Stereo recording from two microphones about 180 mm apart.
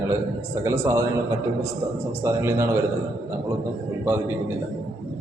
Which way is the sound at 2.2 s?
15° right (ahead or behind).